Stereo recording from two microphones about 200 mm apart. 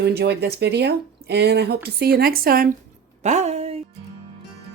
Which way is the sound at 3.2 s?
35° right (ahead or behind).